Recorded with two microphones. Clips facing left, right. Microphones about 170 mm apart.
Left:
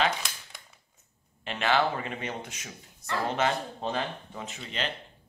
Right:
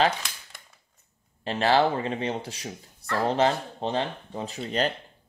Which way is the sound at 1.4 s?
35° right (ahead or behind).